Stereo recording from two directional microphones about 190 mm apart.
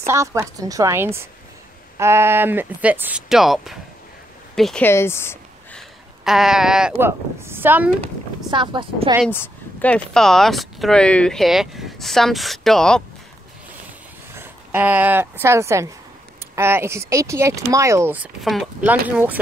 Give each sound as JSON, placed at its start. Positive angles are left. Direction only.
{"t": 0.0, "sound": "speech", "side_deg": -15}
{"t": 4.8, "sound": "speech", "side_deg": 15}
{"t": 5.8, "sound": "speech", "side_deg": 0}
{"t": 8.5, "sound": "speech", "side_deg": -25}
{"t": 9.3, "sound": "speech", "side_deg": 10}
{"t": 14.3, "sound": "speech", "side_deg": -10}